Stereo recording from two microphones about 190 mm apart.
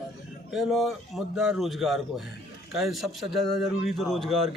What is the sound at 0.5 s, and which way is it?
A man's voice, centre (ahead or behind).